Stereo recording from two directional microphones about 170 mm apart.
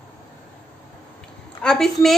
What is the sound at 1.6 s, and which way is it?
Speech, 5° left (ahead or behind).